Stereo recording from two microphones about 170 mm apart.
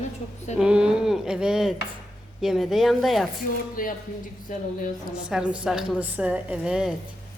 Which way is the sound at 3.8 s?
55° left (ahead or behind).